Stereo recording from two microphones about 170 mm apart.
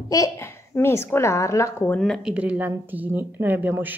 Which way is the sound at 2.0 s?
Centre (ahead or behind).